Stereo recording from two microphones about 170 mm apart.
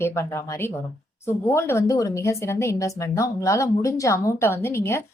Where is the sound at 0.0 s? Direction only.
15° left (ahead or behind).